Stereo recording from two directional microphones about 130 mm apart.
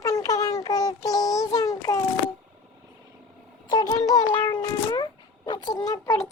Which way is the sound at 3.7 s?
30° left (ahead or behind).